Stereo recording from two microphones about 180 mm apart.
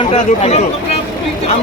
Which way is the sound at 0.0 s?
35° left (ahead or behind).